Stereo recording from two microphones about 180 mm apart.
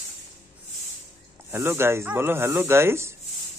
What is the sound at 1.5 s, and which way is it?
Speech, 15° right (ahead or behind).